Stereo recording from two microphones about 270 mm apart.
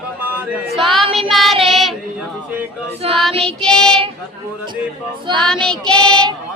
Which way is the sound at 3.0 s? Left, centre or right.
Right.